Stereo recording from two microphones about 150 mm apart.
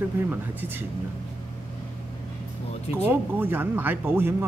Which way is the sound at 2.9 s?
15° right (ahead or behind).